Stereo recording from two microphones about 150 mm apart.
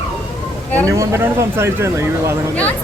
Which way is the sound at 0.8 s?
20° right (ahead or behind).